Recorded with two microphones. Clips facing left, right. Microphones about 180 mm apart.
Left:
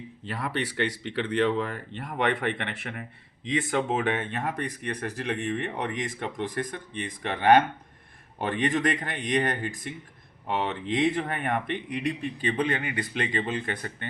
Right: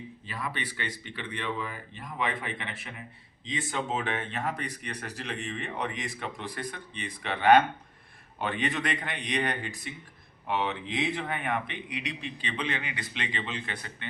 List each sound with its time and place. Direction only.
0.3 s speech: 70° left (ahead or behind); by 14.1 s 50° left (ahead or behind)